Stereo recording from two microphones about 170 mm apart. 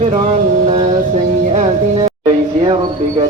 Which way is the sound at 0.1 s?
35° right (ahead or behind).